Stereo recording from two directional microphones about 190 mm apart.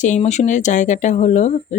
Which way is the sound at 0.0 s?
40° left (ahead or behind).